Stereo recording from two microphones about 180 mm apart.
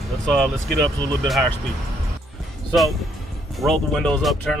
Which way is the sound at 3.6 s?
5° left (ahead or behind).